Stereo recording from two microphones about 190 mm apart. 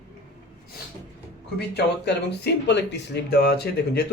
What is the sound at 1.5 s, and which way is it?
Speech, 60° left (ahead or behind).